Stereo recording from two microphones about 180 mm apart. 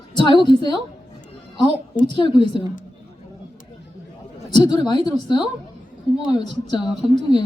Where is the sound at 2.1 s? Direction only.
25° left (ahead or behind).